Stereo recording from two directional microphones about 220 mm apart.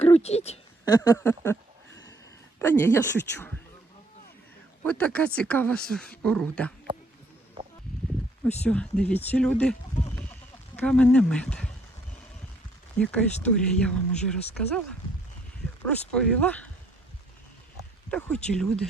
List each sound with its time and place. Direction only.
0.0 s a sound: 30° left (ahead or behind)
0.9 s speech: 15° left (ahead or behind)
2.6 s speech: 10° left (ahead or behind)
4.8 s speech: 5° left (ahead or behind)
7.6 s a sound: 20° right (ahead or behind)
8.6 s speech: 5° left (ahead or behind)
10.8 s speech: 5° left (ahead or behind)
13.0 s speech: 5° left (ahead or behind)
15.9 s speech: 5° left (ahead or behind)
18.1 s speech: 5° left (ahead or behind)